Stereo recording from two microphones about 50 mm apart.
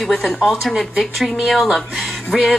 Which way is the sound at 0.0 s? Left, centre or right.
Centre.